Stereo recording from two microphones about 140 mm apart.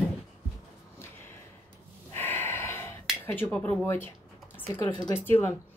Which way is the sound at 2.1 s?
15° left (ahead or behind).